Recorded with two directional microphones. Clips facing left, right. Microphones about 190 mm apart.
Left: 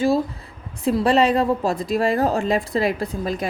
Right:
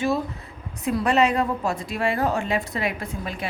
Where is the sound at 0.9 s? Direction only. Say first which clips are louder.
Left 3 dB; 30° left (ahead or behind).